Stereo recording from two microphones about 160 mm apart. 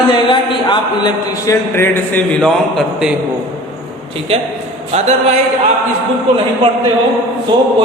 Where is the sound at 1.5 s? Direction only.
15° left (ahead or behind); by 3.2 s centre (ahead or behind).